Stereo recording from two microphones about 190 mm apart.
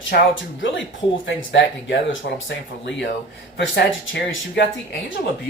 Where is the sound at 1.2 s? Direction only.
70° left (ahead or behind).